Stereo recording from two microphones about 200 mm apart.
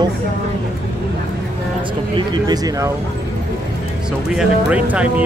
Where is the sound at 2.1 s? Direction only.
20° right (ahead or behind).